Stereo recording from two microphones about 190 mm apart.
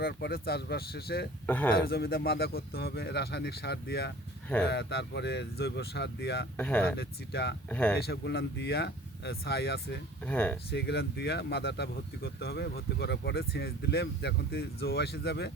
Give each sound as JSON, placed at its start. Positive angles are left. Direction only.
{"t": 0.0, "sound": "speech", "side_deg": 55}
{"t": 1.5, "sound": "speech", "side_deg": 10}
{"t": 1.9, "sound": "speech", "side_deg": 55}
{"t": 6.6, "sound": "speech", "side_deg": 5}
{"t": 7.0, "sound": "speech", "side_deg": 60}
{"t": 7.7, "sound": "speech", "side_deg": 5}
{"t": 7.9, "sound": "speech", "side_deg": 60}
{"t": 10.2, "sound": "speech", "side_deg": 5}
{"t": 10.7, "sound": "speech", "side_deg": 60}